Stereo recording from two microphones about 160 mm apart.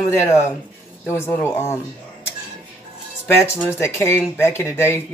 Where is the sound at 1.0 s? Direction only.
15° left (ahead or behind).